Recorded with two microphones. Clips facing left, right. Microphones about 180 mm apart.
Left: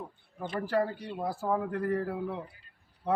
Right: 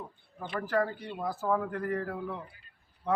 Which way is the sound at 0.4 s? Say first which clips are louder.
Left 1 dB; 35° left (ahead or behind).